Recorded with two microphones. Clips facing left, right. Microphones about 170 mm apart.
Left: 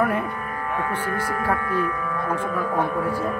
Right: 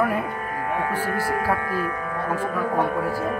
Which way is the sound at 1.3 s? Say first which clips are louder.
Left 2 dB; 35° right (ahead or behind).